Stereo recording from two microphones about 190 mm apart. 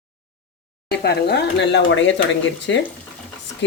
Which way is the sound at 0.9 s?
60° left (ahead or behind).